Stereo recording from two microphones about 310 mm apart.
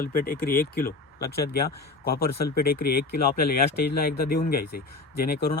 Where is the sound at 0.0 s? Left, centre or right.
Left.